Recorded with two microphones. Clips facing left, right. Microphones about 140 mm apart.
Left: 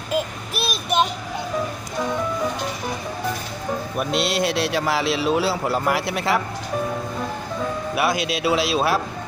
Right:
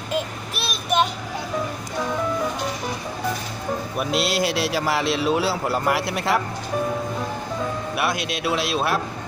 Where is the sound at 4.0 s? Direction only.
Centre (ahead or behind).